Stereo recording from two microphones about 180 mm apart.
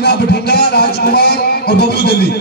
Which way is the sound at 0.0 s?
65° left (ahead or behind).